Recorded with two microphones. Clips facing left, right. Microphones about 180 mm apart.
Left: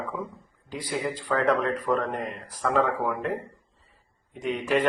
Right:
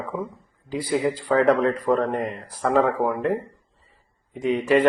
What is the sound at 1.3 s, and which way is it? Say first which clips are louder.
Speech: right 5 dB; 35° right (ahead or behind).